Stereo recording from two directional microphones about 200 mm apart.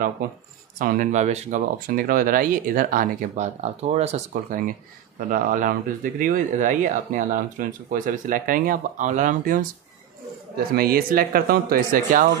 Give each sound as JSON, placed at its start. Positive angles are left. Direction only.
{"t": 0.7, "sound": "speech", "side_deg": -45}
{"t": 10.8, "sound": "speech", "side_deg": -50}